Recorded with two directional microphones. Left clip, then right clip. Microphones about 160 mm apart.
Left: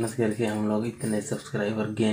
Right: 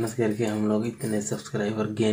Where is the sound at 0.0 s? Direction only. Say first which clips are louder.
Right 1 dB; 20° right (ahead or behind).